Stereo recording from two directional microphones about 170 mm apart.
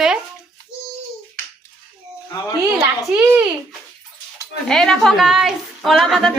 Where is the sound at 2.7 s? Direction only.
10° right (ahead or behind).